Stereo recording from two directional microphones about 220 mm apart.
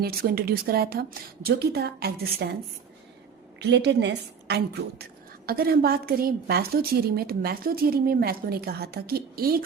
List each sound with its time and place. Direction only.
0.0 s a woman's voice: 45° right (ahead or behind)
3.6 s a woman's voice: 50° right (ahead or behind)